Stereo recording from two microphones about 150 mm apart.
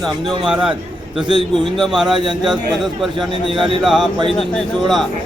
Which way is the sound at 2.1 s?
35° right (ahead or behind).